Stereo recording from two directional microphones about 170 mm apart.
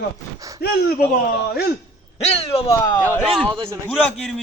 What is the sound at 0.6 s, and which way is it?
Speech, 70° left (ahead or behind).